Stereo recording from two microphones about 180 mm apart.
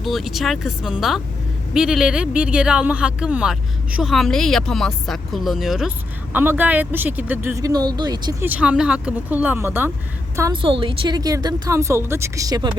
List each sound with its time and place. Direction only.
0.0 s speech: centre (ahead or behind); by 8.4 s 20° right (ahead or behind)
8.4 s speech: 5° right (ahead or behind)
10.5 s speech: 30° right (ahead or behind)